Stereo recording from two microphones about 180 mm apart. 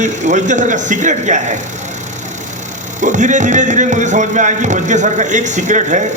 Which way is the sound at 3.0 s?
45° right (ahead or behind).